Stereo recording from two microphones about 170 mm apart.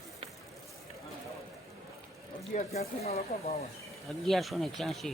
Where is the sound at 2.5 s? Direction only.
40° left (ahead or behind).